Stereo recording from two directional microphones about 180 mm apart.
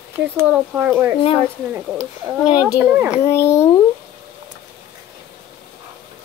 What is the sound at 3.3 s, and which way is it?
Speech, 15° left (ahead or behind).